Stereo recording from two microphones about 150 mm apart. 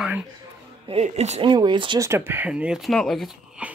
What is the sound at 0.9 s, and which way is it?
Speech, 45° right (ahead or behind).